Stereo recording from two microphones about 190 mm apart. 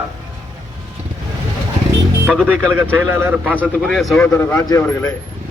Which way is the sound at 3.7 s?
Centre (ahead or behind).